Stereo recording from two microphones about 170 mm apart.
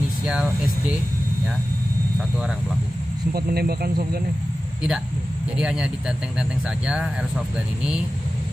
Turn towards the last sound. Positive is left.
turn(degrees=-5)  # may be behind; listen again after turning